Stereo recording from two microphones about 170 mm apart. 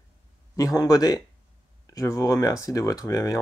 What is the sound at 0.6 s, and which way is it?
Speech, 20° left (ahead or behind).